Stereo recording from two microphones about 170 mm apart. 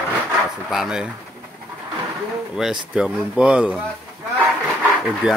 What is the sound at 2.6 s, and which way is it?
Speech, 5° right (ahead or behind).